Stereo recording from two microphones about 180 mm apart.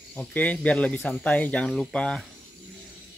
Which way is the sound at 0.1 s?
10° left (ahead or behind).